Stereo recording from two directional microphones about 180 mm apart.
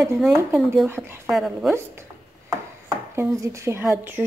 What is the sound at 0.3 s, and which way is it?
Speech, 15° right (ahead or behind).